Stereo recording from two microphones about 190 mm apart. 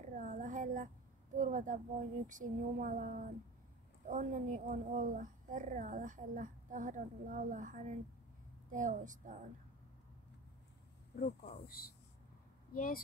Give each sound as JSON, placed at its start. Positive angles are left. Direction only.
{"t": 0.0, "sound": "a sound", "side_deg": -40}
{"t": 1.3, "sound": "a woman's voice", "side_deg": -45}
{"t": 11.6, "sound": "speech", "side_deg": 50}